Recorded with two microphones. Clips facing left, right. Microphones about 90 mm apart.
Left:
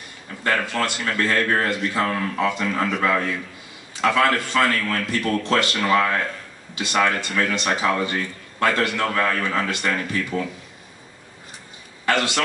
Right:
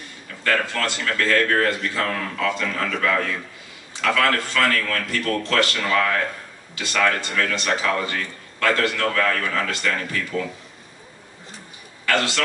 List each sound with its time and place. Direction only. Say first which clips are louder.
0.4 s a man's voice: even; 25° left (ahead or behind)
12.1 s a man's voice: left 1 dB; 20° left (ahead or behind)